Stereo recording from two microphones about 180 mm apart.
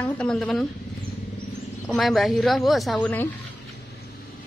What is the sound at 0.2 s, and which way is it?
Speech, 5° left (ahead or behind).